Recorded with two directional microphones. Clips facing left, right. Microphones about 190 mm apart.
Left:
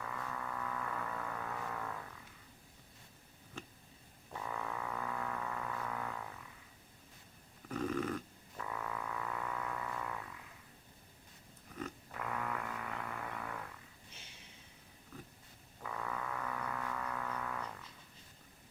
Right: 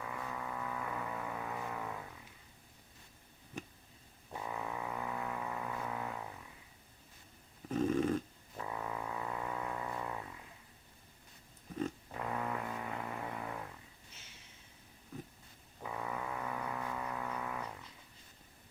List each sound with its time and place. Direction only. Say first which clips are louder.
0.0 s vehicle: right 1 dB; 15° right (ahead or behind)
3.6 s a sound: right 4 dB; 15° right (ahead or behind)
4.3 s music: right 1 dB; 15° right (ahead or behind)
7.7 s music: right 5 dB; 25° right (ahead or behind)
11.8 s a sound: right 5 dB; 25° right (ahead or behind)
15.8 s music: right 1 dB; 20° right (ahead or behind)